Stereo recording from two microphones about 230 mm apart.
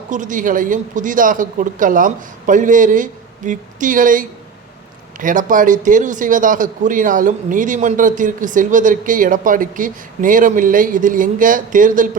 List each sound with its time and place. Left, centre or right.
0.1 s a man's voice: right